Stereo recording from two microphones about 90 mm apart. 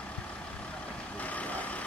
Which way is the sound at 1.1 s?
15° left (ahead or behind).